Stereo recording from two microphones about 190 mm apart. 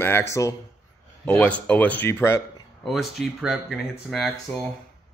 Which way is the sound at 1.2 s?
10° left (ahead or behind).